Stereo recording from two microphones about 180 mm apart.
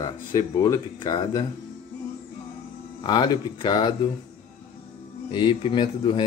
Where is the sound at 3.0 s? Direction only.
25° left (ahead or behind).